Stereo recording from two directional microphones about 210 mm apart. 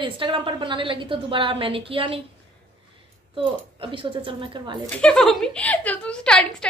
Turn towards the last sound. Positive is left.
turn(degrees=5)  # may be behind; listen again after turning